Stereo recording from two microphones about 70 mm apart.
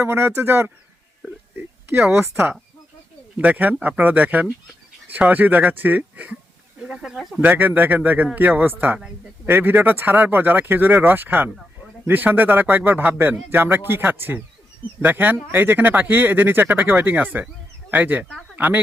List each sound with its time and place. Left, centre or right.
0.0 s a man's voice: right
3.3 s speech: right
6.8 s speech: centre
7.4 s a man's voice: right